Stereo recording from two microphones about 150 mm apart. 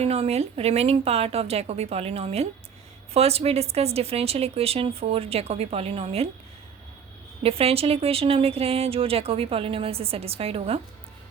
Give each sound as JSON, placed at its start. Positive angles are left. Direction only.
{"t": 0.0, "sound": "a woman's voice", "side_deg": -45}
{"t": 7.4, "sound": "a woman's voice", "side_deg": -40}